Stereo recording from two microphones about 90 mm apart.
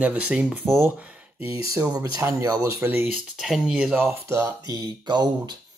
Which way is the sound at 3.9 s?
30° right (ahead or behind).